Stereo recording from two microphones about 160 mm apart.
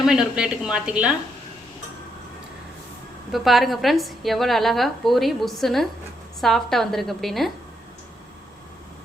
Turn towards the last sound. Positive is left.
turn(degrees=0)  # may be behind; listen again after turning